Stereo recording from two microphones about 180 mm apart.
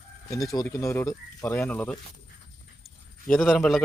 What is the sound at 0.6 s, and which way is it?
Speech, 15° left (ahead or behind).